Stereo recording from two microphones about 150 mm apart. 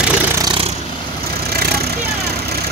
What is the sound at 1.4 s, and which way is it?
Vehicle, 90° right.